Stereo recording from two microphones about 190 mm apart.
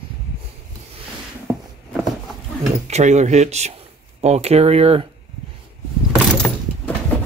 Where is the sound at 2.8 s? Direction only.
35° right (ahead or behind).